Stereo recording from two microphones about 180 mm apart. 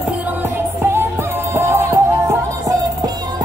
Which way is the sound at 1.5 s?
15° right (ahead or behind).